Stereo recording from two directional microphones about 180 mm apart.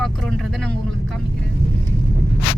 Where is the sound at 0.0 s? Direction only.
Centre (ahead or behind).